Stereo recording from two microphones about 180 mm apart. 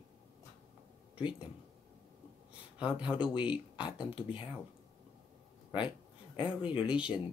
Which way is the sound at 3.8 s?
25° left (ahead or behind).